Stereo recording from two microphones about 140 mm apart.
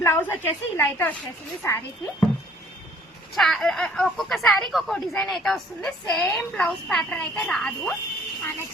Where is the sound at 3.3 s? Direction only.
Centre (ahead or behind).